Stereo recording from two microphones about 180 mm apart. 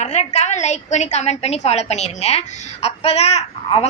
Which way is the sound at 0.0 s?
40° left (ahead or behind).